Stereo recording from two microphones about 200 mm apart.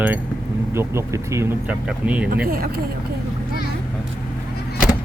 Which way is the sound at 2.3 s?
50° right (ahead or behind).